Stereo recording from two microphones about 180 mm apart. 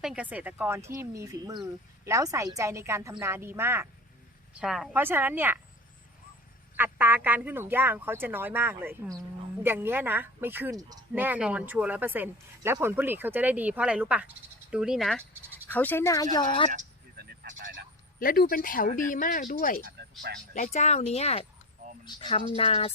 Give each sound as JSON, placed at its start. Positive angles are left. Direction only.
{"t": 0.0, "sound": "speech", "side_deg": -5}
{"t": 4.6, "sound": "speech", "side_deg": 0}
{"t": 6.7, "sound": "speech", "side_deg": -10}
{"t": 15.7, "sound": "speech", "side_deg": 10}
{"t": 17.2, "sound": "a sound", "side_deg": -45}
{"t": 18.2, "sound": "speech", "side_deg": 50}
{"t": 19.8, "sound": "speech", "side_deg": -60}
{"t": 20.5, "sound": "speech", "side_deg": 40}